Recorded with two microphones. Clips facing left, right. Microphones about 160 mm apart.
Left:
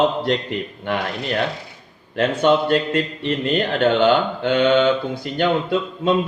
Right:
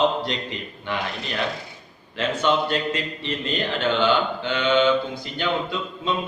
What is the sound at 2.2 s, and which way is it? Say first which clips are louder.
A man's voice: left 5 dB; 55° left (ahead or behind).